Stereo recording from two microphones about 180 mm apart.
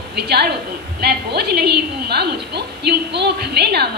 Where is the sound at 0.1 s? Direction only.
65° right (ahead or behind).